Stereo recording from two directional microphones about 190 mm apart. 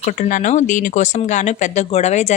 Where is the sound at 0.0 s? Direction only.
45° left (ahead or behind).